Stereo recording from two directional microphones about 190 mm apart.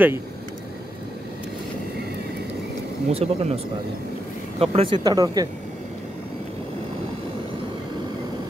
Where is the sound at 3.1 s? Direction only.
30° right (ahead or behind).